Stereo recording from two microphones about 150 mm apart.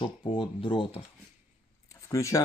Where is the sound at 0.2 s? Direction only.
35° left (ahead or behind).